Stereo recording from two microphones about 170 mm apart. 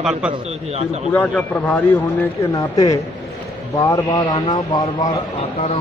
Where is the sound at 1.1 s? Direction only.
10° left (ahead or behind).